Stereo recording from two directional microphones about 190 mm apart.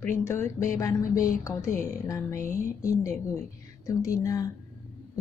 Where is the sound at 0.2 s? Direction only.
15° left (ahead or behind).